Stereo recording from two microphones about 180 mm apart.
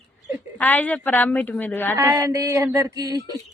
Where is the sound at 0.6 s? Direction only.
10° left (ahead or behind).